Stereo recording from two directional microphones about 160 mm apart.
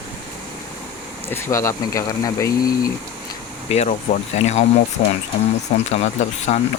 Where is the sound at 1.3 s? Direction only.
15° left (ahead or behind).